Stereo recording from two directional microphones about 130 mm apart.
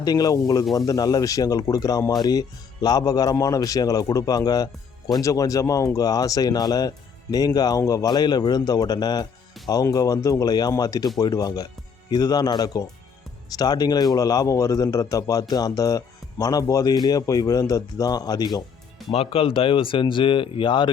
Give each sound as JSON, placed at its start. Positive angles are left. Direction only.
{"t": 0.0, "sound": "a man's voice", "side_deg": 30}
{"t": 19.1, "sound": "speech", "side_deg": 45}